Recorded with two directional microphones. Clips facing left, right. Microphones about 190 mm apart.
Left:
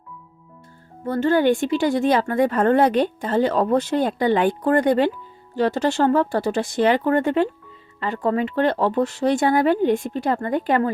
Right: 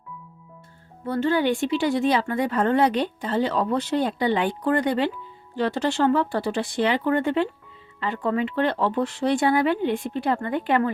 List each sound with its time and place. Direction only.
1.0 s speech: 45° left (ahead or behind)